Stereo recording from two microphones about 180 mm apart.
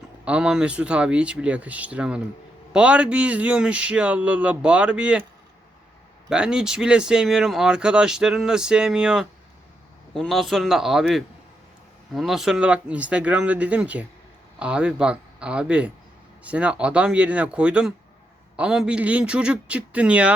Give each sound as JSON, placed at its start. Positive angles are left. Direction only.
{"t": 0.3, "sound": "speech", "side_deg": -5}
{"t": 6.3, "sound": "speech", "side_deg": -5}